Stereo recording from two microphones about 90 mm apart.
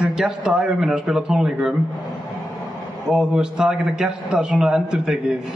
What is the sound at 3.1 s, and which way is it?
A man's voice, 10° right (ahead or behind).